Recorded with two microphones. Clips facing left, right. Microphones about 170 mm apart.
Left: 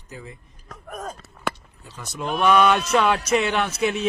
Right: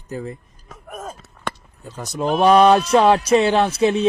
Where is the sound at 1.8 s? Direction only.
40° right (ahead or behind).